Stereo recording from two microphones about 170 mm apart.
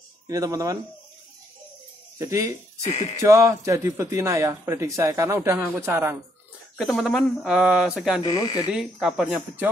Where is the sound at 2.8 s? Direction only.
40° left (ahead or behind).